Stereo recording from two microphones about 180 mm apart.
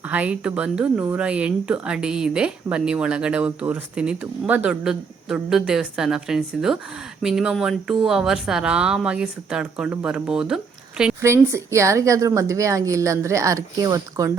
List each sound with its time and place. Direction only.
0.1 s speech: 5° right (ahead or behind)
11.2 s a woman's voice: 15° right (ahead or behind)